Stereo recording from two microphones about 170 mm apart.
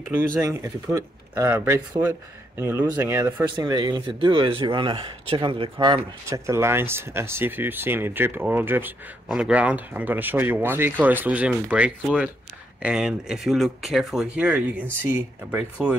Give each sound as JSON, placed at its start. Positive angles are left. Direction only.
{"t": 0.1, "sound": "speech", "side_deg": -15}
{"t": 3.4, "sound": "speech", "side_deg": -25}